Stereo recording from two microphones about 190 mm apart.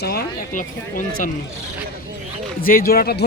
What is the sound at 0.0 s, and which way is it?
Speech, 55° left (ahead or behind).